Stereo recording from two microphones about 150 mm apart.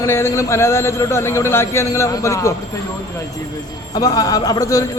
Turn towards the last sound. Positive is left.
turn(degrees=20)  # may be behind; listen again after turning